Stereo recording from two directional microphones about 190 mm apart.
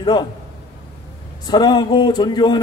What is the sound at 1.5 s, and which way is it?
A man's voice, 20° left (ahead or behind).